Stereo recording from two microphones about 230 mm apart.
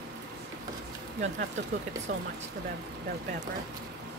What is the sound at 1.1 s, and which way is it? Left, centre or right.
Speech, right.